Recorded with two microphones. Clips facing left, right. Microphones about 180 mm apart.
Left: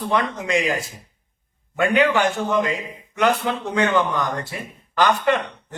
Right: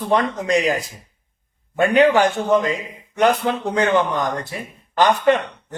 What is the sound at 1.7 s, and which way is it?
A man's voice, 35° right (ahead or behind).